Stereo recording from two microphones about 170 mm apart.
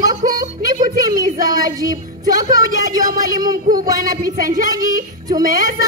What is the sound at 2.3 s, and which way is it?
Speech, 50° right (ahead or behind).